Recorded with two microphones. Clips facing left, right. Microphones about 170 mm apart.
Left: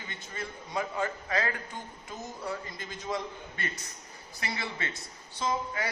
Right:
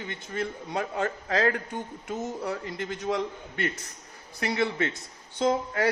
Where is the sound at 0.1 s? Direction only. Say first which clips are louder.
Right 8 dB; 65° right (ahead or behind).